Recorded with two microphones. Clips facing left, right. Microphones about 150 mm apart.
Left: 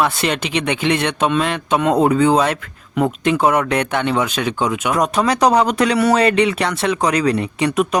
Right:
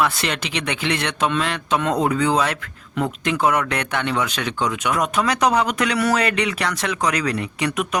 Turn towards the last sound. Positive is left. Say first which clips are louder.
# left 6 dB
turn(degrees=30)  # may be behind; listen again after turning